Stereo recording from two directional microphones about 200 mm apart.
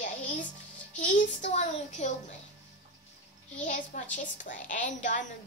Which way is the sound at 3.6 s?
40° left (ahead or behind).